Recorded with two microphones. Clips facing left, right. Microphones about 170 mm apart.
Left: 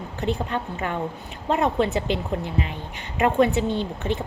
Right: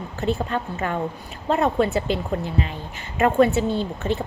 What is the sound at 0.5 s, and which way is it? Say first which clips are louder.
A woman's voice: right 2 dB; 15° left (ahead or behind).